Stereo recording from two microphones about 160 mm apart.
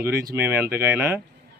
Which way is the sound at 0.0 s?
15° right (ahead or behind).